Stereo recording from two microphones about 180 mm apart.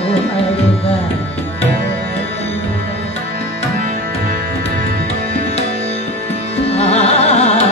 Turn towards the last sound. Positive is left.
turn(degrees=35)  # may be behind; listen again after turning